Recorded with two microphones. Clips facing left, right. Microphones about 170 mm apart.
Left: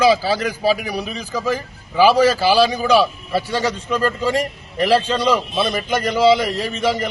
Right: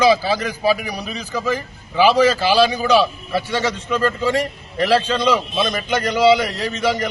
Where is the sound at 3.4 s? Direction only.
35° left (ahead or behind).